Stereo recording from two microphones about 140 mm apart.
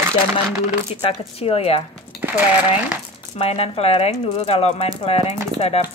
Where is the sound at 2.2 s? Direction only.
10° right (ahead or behind).